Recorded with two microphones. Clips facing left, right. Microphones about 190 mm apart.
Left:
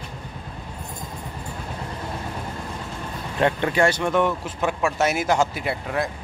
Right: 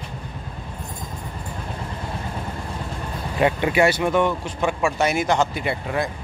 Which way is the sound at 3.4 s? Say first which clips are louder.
Right 2 dB; 10° right (ahead or behind).